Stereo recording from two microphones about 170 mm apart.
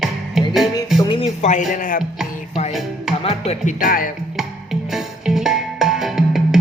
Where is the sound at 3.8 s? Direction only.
55° left (ahead or behind).